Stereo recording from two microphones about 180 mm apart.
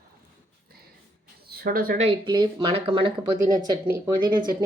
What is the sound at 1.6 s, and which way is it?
Speech, 55° right (ahead or behind).